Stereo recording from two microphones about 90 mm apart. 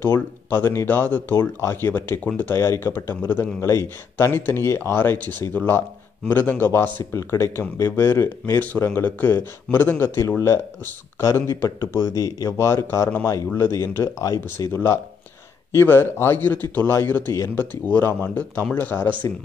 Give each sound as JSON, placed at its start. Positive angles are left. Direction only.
{"t": 0.0, "sound": "speech", "side_deg": 25}